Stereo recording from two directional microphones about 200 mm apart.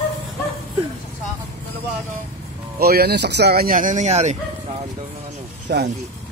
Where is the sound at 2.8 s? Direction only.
50° right (ahead or behind); by 4.4 s 35° right (ahead or behind).